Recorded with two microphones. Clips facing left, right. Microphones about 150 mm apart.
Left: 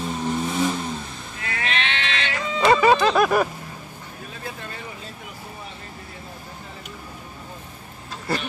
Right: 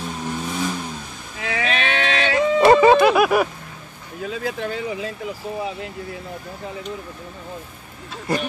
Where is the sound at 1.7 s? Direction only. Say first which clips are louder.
Right 4 dB; 50° right (ahead or behind).